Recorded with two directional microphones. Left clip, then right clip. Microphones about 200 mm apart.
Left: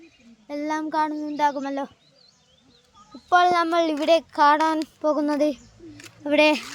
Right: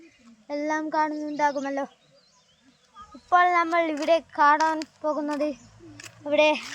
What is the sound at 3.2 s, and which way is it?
Speech, 35° left (ahead or behind).